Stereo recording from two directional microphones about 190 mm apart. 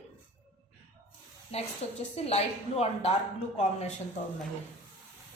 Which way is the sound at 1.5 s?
35° left (ahead or behind).